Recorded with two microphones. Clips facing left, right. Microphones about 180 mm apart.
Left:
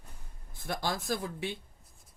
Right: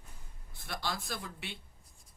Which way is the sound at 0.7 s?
45° left (ahead or behind).